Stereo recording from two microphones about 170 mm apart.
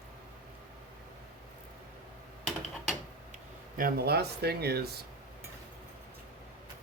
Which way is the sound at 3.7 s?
60° right (ahead or behind).